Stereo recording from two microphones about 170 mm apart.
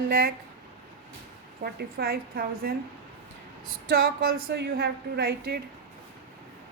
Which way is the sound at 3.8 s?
60° right (ahead or behind).